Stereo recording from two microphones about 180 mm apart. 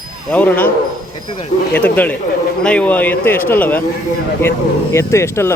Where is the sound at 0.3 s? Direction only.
10° left (ahead or behind).